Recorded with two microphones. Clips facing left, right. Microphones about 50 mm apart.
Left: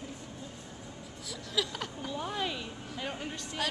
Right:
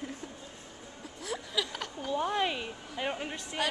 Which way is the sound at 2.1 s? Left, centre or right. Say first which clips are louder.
Right 6 dB; centre.